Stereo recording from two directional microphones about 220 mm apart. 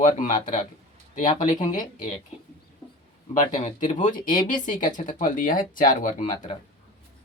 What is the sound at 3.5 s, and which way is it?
Speech, 35° left (ahead or behind).